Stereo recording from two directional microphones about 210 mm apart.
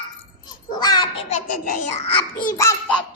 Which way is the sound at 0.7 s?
20° left (ahead or behind).